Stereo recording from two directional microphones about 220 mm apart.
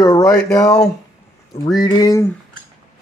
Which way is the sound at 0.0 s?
15° left (ahead or behind).